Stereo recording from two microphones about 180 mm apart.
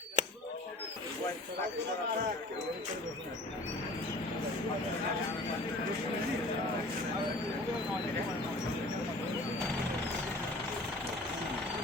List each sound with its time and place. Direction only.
0.2 s chop: 40° right (ahead or behind)